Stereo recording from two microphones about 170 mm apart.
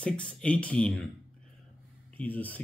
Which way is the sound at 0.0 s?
5° left (ahead or behind).